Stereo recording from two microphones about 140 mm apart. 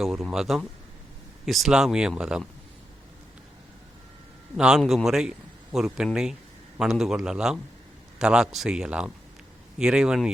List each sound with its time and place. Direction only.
0.0 s speech: centre (ahead or behind)
4.5 s speech: 5° right (ahead or behind)